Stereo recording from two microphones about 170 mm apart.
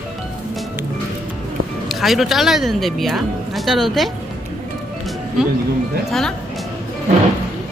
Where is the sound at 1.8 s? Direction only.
Centre (ahead or behind).